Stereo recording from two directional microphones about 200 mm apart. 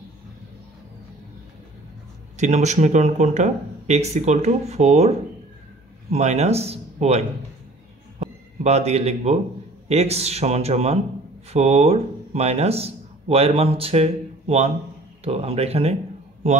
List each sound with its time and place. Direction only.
2.3 s speech: 35° right (ahead or behind)
6.1 s speech: 35° right (ahead or behind)